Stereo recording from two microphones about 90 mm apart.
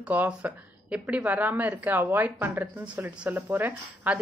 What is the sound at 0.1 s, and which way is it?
Speech, 15° right (ahead or behind).